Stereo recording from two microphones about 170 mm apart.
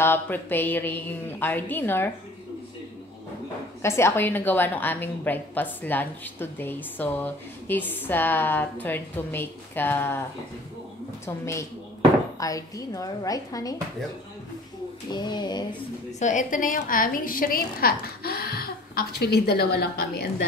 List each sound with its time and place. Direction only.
0.0 s a woman's voice: 10° left (ahead or behind)
3.8 s a woman's voice: 15° left (ahead or behind)
11.2 s a woman's voice: 15° left (ahead or behind)
15.0 s speech: 25° left (ahead or behind)
16.2 s a woman's voice: 45° left (ahead or behind); by 20.4 s 65° left (ahead or behind)